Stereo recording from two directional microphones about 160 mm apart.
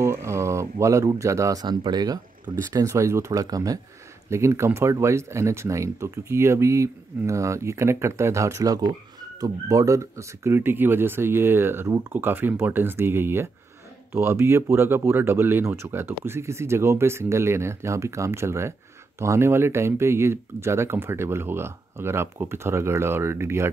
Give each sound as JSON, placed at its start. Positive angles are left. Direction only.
{"t": 0.0, "sound": "speech", "side_deg": -15}